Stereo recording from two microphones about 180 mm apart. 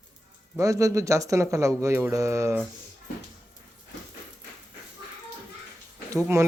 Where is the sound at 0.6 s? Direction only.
15° right (ahead or behind).